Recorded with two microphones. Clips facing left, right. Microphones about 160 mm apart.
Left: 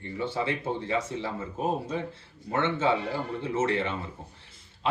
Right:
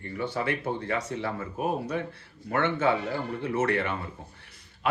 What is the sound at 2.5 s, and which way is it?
Speech, 25° left (ahead or behind).